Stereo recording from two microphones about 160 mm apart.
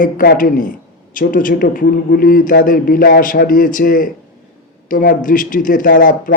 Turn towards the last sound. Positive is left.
turn(degrees=60)  # may be behind; listen again after turning